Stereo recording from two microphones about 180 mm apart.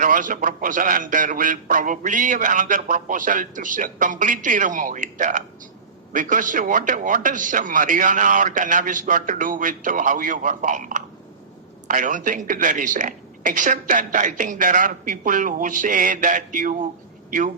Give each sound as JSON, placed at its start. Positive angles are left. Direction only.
{"t": 0.0, "sound": "a man's voice", "side_deg": -45}